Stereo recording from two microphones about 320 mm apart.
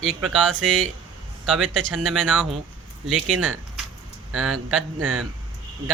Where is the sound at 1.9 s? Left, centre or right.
Centre.